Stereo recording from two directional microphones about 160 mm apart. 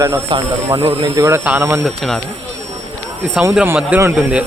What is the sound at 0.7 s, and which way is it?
Speech, 30° right (ahead or behind).